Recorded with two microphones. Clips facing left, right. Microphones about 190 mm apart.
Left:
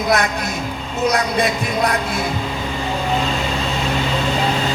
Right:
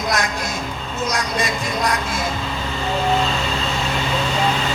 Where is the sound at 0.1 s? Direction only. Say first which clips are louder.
Left 5 dB; 60° left (ahead or behind).